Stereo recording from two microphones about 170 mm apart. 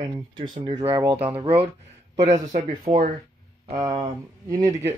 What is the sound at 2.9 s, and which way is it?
Speech, 25° right (ahead or behind).